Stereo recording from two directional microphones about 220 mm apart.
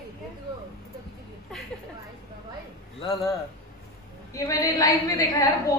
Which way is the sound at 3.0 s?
15° left (ahead or behind).